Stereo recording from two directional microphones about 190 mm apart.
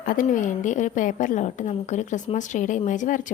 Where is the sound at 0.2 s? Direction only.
45° left (ahead or behind).